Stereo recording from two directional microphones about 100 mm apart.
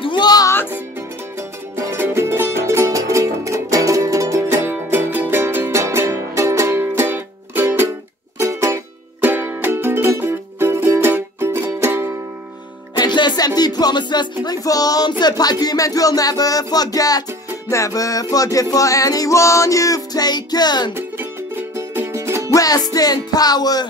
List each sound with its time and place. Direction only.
0.0 s music: 50° left (ahead or behind)
2.0 s music: 25° right (ahead or behind)
12.9 s music: 45° left (ahead or behind)
20.9 s music: 20° right (ahead or behind)
22.5 s music: 35° left (ahead or behind)